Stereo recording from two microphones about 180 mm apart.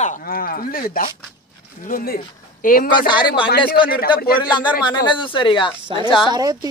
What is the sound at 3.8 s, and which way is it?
Music, 55° left (ahead or behind).